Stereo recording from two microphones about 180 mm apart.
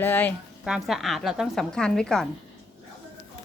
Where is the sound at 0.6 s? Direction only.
Centre (ahead or behind).